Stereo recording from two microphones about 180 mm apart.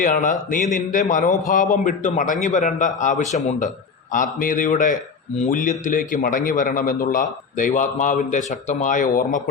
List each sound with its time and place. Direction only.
0.0 s a man's voice: 45° left (ahead or behind)